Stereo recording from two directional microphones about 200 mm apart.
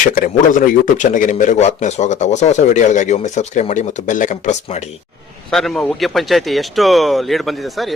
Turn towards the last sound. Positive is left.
turn(degrees=0)  # may be behind; listen again after turning